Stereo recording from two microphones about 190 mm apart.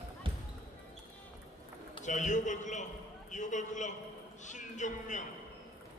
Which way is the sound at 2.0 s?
40° left (ahead or behind).